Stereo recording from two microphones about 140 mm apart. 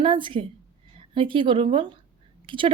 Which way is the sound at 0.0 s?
35° right (ahead or behind).